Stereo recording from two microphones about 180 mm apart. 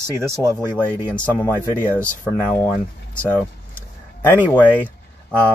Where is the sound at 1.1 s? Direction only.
15° left (ahead or behind).